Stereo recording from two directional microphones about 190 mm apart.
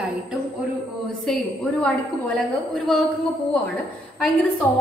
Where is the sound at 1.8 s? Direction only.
5° left (ahead or behind).